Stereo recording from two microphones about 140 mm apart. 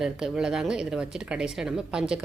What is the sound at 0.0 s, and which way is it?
A woman's voice, 5° right (ahead or behind).